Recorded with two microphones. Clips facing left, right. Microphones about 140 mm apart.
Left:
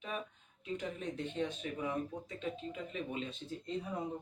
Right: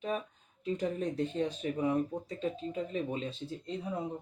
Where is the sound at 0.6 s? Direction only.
35° right (ahead or behind).